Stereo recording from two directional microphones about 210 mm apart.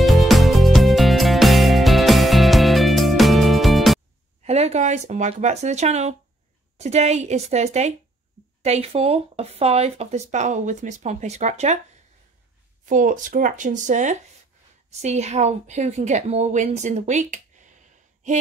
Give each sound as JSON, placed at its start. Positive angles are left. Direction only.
{"t": 0.0, "sound": "music", "side_deg": 0}
{"t": 4.4, "sound": "speech", "side_deg": -30}
{"t": 12.8, "sound": "a woman's voice", "side_deg": -40}